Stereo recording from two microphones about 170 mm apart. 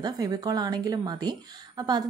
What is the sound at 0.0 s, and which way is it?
Speech, 20° right (ahead or behind).